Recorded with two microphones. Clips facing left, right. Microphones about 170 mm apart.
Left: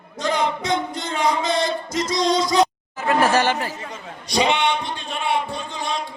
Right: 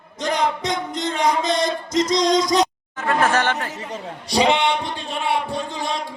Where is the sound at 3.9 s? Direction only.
35° right (ahead or behind).